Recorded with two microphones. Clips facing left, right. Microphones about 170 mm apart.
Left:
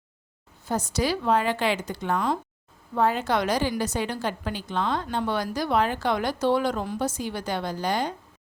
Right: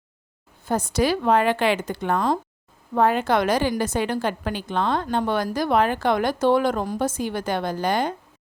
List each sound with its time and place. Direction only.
0.6 s a woman's voice: 55° right (ahead or behind)
2.9 s a woman's voice: 60° right (ahead or behind)